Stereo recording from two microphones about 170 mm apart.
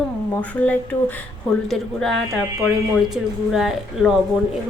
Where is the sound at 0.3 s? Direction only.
10° left (ahead or behind).